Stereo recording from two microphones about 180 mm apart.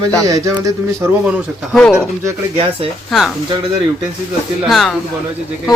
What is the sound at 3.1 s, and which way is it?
Speech, centre (ahead or behind).